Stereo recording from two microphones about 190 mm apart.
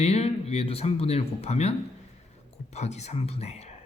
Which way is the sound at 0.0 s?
35° left (ahead or behind).